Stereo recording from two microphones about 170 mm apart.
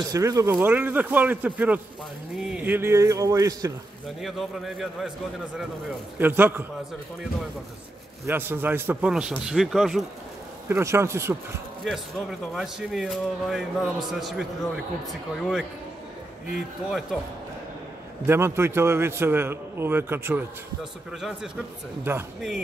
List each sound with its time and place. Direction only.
0.1 s a man's voice: 20° right (ahead or behind)
4.2 s speech: centre (ahead or behind)
6.1 s a man's voice: 10° right (ahead or behind)
8.3 s a man's voice: 10° right (ahead or behind)
10.7 s a man's voice: 15° right (ahead or behind)
11.8 s speech: centre (ahead or behind)
16.5 s speech: centre (ahead or behind)
18.2 s a man's voice: 15° right (ahead or behind)